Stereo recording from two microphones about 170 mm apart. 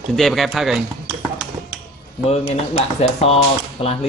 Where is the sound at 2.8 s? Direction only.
35° left (ahead or behind).